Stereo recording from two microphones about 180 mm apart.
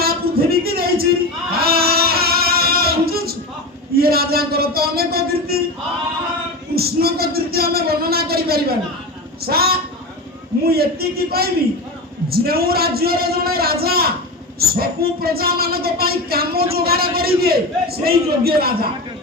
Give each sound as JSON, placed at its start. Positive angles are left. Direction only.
{"t": 0.0, "sound": "a sound", "side_deg": -60}
{"t": 1.6, "sound": "music", "side_deg": -60}
{"t": 3.9, "sound": "speech", "side_deg": -60}
{"t": 6.7, "sound": "speech", "side_deg": -60}